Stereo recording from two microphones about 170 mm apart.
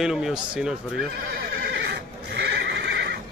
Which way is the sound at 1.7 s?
75° right (ahead or behind).